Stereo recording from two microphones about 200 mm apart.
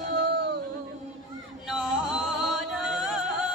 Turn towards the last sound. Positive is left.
turn(degrees=0)  # may be behind; listen again after turning